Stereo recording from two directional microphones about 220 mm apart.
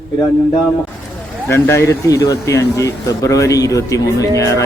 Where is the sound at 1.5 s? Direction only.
10° left (ahead or behind).